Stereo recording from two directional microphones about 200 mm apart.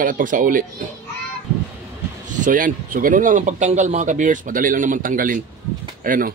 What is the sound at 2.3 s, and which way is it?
Speech, 40° right (ahead or behind).